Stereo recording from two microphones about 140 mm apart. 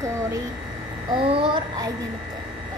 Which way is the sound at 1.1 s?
40° right (ahead or behind).